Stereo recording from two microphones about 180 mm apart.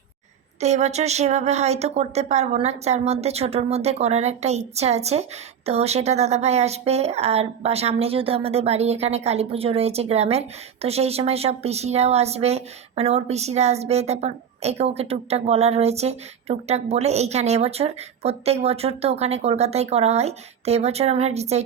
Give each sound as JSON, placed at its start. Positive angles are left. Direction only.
{"t": 0.6, "sound": "a woman's voice", "side_deg": -40}